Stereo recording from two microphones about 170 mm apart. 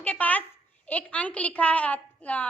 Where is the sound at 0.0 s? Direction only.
10° left (ahead or behind).